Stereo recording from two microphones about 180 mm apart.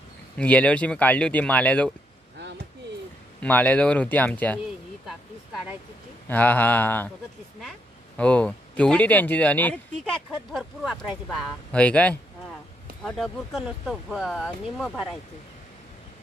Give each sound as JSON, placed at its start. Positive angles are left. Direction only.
{"t": 0.4, "sound": "speech", "side_deg": 5}
{"t": 2.3, "sound": "a sound", "side_deg": -75}
{"t": 3.3, "sound": "speech", "side_deg": 10}
{"t": 5.0, "sound": "a sound", "side_deg": 0}
{"t": 6.2, "sound": "speech", "side_deg": 10}
{"t": 8.2, "sound": "speech", "side_deg": 5}